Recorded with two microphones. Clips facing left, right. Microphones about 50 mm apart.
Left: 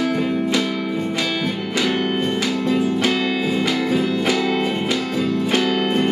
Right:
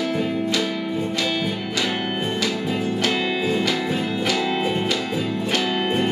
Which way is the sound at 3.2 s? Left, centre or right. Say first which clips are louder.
Left 2 dB; centre.